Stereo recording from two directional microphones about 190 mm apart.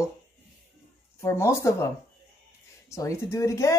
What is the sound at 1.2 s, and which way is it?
Speech, 15° left (ahead or behind).